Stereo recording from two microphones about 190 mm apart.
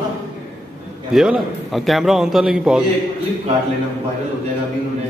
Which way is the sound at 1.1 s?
Centre (ahead or behind).